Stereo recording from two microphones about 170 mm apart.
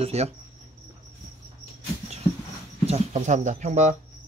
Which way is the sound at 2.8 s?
40° right (ahead or behind).